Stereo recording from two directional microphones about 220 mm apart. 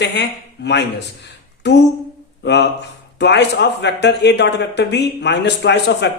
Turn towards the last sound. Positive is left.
turn(degrees=50)  # may be behind; listen again after turning